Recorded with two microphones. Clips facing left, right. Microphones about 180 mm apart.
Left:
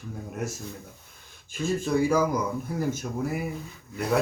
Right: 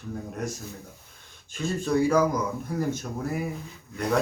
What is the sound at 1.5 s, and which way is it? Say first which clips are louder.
Speech: even; 10° left (ahead or behind).